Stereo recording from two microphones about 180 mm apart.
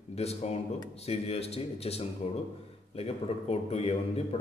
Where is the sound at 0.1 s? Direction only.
35° left (ahead or behind).